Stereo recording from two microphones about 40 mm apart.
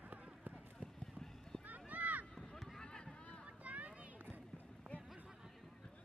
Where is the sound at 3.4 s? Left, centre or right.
Right.